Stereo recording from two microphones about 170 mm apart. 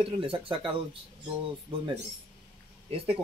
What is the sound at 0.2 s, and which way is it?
Speech, 30° right (ahead or behind).